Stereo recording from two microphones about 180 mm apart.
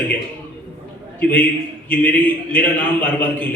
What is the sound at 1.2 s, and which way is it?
Speech, 10° left (ahead or behind).